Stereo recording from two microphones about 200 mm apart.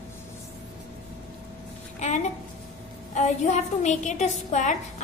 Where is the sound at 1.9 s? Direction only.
35° left (ahead or behind).